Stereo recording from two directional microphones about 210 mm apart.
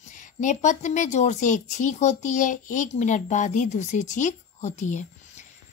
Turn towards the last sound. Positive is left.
turn(degrees=35)  # may be behind; listen again after turning